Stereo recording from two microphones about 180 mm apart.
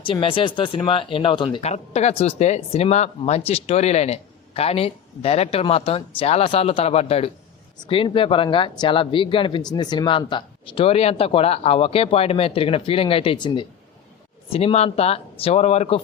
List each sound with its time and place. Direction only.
0.0 s speech: 30° left (ahead or behind)